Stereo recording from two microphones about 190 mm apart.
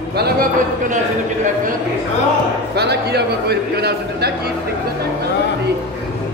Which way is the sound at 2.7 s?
60° right (ahead or behind).